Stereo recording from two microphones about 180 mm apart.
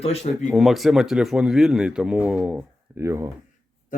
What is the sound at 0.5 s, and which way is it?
A man's voice, centre (ahead or behind).